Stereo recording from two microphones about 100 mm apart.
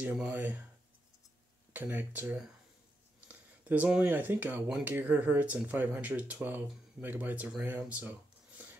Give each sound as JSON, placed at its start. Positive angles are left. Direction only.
{"t": 0.0, "sound": "speech", "side_deg": -15}
{"t": 1.7, "sound": "speech", "side_deg": -20}